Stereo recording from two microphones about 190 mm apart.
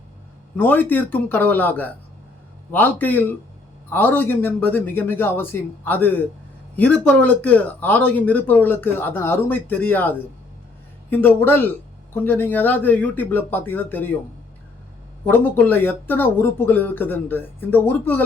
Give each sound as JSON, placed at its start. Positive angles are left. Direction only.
{"t": 0.5, "sound": "speech", "side_deg": 10}
{"t": 15.2, "sound": "speech", "side_deg": 10}